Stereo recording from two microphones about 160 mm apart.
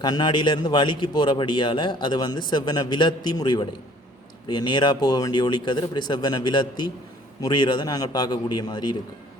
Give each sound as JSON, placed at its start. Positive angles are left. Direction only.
{"t": 0.0, "sound": "a man's voice", "side_deg": 25}